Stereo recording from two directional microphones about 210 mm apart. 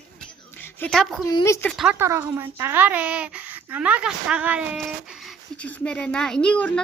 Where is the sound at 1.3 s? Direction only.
15° left (ahead or behind).